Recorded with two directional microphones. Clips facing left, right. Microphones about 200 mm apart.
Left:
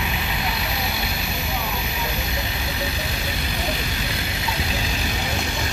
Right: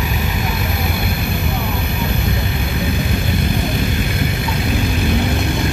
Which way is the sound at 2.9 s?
50° right (ahead or behind).